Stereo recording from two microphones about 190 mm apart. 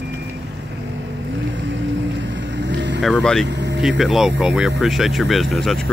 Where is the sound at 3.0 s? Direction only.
5° left (ahead or behind).